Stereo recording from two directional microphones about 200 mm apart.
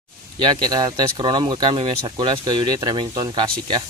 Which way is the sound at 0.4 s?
20° right (ahead or behind).